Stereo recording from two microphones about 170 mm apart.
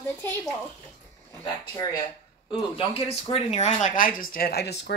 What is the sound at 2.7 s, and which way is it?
Speech, 35° left (ahead or behind).